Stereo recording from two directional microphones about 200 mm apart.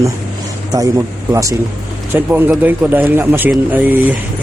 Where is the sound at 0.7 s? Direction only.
15° right (ahead or behind).